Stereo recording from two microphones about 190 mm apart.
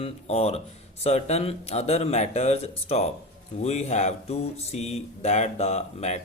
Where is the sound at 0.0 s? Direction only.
35° left (ahead or behind).